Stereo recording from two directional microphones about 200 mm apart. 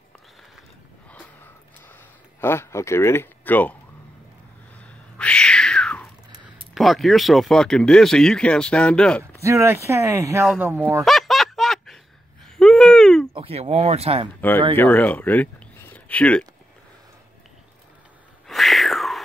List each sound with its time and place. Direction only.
2.4 s speech: 10° left (ahead or behind)
4.7 s cat: 5° left (ahead or behind)
6.7 s speech: centre (ahead or behind)
9.4 s speech: 15° right (ahead or behind)
10.4 s speech: centre (ahead or behind)
10.7 s speech: 15° right (ahead or behind)
11.1 s snicker: centre (ahead or behind)
12.5 s a sound: 5° left (ahead or behind)
13.3 s speech: 30° right (ahead or behind)
14.8 s speech: 10° left (ahead or behind)
18.5 s a sound: centre (ahead or behind)